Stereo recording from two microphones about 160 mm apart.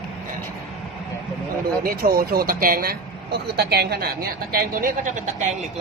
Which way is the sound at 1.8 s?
70° right (ahead or behind).